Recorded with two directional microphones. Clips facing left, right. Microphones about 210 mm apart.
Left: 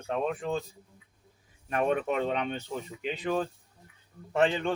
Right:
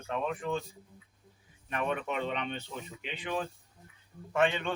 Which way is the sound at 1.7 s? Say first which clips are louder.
Left 6 dB; 40° left (ahead or behind).